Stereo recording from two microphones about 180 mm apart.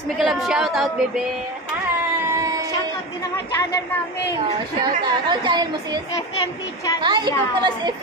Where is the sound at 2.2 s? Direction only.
20° right (ahead or behind).